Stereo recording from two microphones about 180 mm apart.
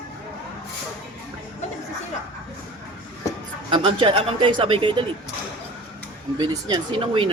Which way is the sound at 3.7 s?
30° right (ahead or behind).